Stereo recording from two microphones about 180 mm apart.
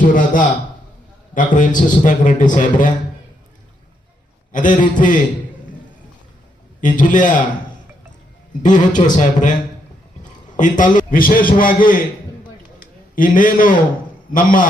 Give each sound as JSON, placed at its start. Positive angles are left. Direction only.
{"t": 0.1, "sound": "a man's voice", "side_deg": 45}
{"t": 4.5, "sound": "a man's voice", "side_deg": 45}
{"t": 6.8, "sound": "a man's voice", "side_deg": 45}
{"t": 8.6, "sound": "a man's voice", "side_deg": 45}
{"t": 10.6, "sound": "a man's voice", "side_deg": 45}
{"t": 13.1, "sound": "a man's voice", "side_deg": 50}